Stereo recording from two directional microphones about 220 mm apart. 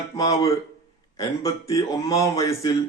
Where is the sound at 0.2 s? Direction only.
15° left (ahead or behind).